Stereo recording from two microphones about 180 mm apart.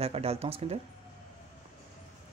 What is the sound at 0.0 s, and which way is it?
Speech, 35° right (ahead or behind).